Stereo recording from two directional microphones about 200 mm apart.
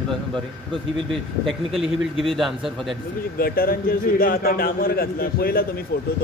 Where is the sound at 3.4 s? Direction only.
50° left (ahead or behind).